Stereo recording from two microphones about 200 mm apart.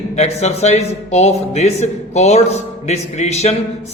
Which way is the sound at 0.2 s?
35° left (ahead or behind).